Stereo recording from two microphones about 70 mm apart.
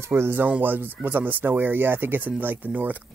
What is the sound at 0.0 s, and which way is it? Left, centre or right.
Speech, right.